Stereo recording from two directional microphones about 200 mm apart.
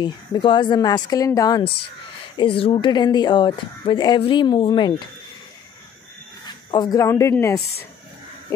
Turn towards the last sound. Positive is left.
turn(degrees=15)  # may be behind; listen again after turning